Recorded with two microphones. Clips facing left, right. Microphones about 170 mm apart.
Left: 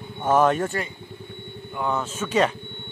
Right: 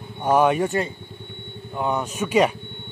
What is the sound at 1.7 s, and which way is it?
Speech, 20° right (ahead or behind).